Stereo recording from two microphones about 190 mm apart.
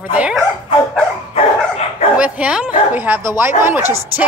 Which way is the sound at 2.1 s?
5° right (ahead or behind).